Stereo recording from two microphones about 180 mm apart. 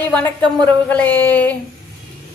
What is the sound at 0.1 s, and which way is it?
A woman's voice, 5° left (ahead or behind).